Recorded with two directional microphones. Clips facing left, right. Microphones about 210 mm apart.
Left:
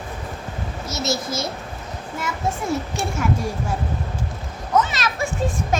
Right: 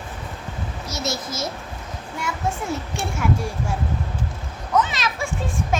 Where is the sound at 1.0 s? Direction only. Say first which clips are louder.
Left 3 dB; 30° left (ahead or behind).